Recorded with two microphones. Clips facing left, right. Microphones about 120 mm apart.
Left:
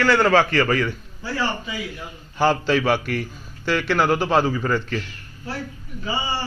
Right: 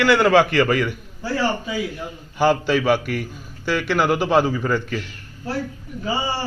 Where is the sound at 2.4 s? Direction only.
10° right (ahead or behind).